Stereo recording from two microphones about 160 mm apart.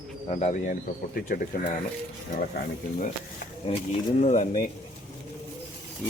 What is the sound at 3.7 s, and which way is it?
Speech, 40° left (ahead or behind).